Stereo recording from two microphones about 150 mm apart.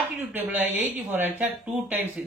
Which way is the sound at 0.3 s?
10° right (ahead or behind).